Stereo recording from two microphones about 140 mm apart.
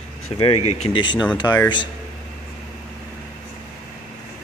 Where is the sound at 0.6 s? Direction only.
50° left (ahead or behind).